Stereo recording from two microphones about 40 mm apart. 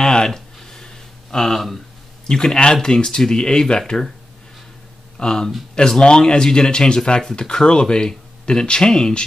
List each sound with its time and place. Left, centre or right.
0.0 s a sound: centre
2.2 s speech: centre
5.1 s speech: centre